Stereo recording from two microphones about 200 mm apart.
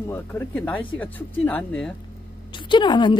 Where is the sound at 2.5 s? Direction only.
25° left (ahead or behind).